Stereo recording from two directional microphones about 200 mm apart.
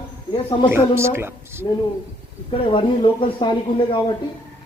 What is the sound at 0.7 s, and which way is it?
A woman's voice, 10° right (ahead or behind).